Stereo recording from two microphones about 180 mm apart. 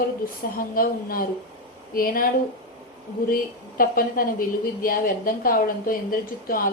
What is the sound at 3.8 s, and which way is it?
A woman's voice, 50° left (ahead or behind).